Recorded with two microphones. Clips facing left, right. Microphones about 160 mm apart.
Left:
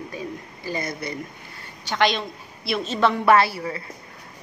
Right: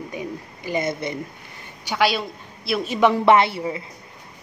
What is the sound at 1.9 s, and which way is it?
A woman's voice, 5° right (ahead or behind).